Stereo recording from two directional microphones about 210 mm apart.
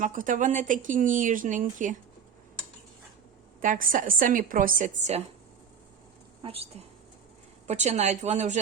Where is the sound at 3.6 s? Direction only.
40° right (ahead or behind).